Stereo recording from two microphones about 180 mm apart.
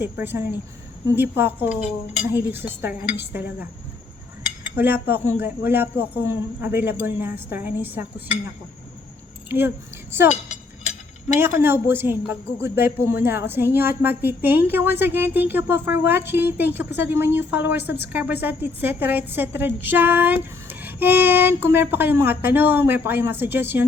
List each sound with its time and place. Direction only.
0.0 s a woman's voice: 10° right (ahead or behind)
4.8 s a woman's voice: 10° right (ahead or behind)
9.5 s a woman's voice: 10° right (ahead or behind)
11.3 s a woman's voice: 10° right (ahead or behind)
17.8 s speech: 70° left (ahead or behind)
18.1 s a woman's voice: 10° right (ahead or behind)